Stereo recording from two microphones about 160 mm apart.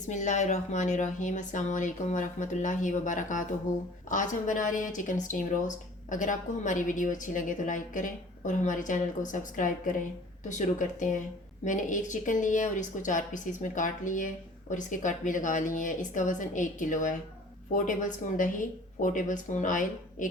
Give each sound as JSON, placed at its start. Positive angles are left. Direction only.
{"t": 0.1, "sound": "speech", "side_deg": 50}